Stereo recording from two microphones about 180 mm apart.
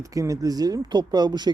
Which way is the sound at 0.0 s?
20° right (ahead or behind).